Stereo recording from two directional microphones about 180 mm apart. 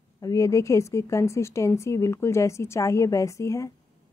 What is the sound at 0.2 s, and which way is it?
A woman's voice, 20° left (ahead or behind).